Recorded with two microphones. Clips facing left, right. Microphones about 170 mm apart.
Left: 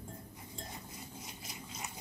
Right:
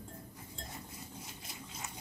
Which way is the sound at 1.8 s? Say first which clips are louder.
Left 1 dB; 20° left (ahead or behind).